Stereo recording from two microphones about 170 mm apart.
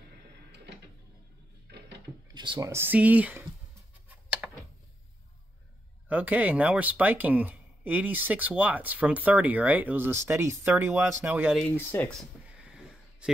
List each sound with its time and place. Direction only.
2.3 s speech: 25° right (ahead or behind)
2.7 s speech: 10° right (ahead or behind)
4.4 s a sound: 10° right (ahead or behind)
6.0 s speech: 10° right (ahead or behind)
11.5 s speech: 10° left (ahead or behind)
12.2 s a sound: 5° right (ahead or behind)